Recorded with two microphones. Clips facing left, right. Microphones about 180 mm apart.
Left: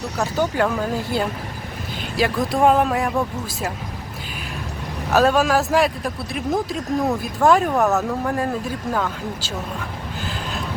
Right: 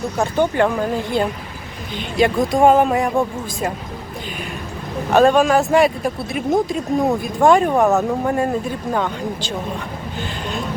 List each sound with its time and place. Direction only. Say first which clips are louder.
0.2 s speech: right 3 dB; 5° left (ahead or behind)
5.1 s speech: right 4 dB; 5° left (ahead or behind)
7.7 s speech: right 3 dB; 15° right (ahead or behind)
8.3 s speech: right 4 dB; centre (ahead or behind)